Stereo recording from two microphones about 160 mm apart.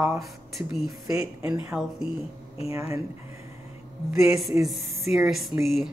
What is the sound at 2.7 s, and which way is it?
Speech, 20° right (ahead or behind).